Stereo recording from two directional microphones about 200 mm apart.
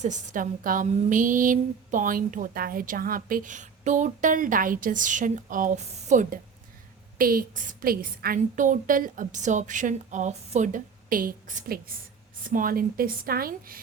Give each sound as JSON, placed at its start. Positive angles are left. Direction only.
{"t": 0.0, "sound": "a woman's voice", "side_deg": -35}